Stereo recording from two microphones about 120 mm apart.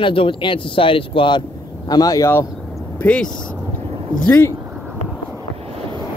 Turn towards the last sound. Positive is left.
turn(degrees=20)  # may be behind; listen again after turning